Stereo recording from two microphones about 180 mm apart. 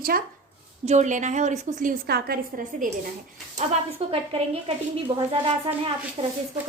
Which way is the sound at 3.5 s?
35° right (ahead or behind).